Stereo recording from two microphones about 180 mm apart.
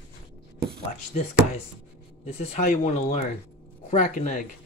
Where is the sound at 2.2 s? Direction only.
40° left (ahead or behind).